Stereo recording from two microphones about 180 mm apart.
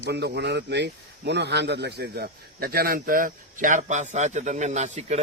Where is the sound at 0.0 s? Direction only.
65° right (ahead or behind).